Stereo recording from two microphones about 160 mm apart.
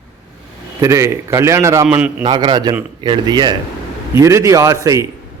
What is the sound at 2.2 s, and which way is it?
A man's voice, 25° right (ahead or behind).